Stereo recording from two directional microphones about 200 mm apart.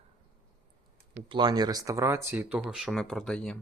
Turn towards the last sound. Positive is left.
turn(degrees=5)  # may be behind; listen again after turning